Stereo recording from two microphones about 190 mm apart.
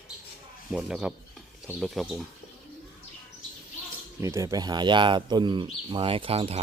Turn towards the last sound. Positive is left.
turn(degrees=-30)  # may be behind; listen again after turning